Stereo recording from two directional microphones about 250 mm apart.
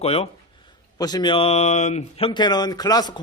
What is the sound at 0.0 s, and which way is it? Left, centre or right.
Speech, left.